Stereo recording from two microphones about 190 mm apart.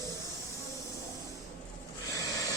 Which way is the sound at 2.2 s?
20° left (ahead or behind).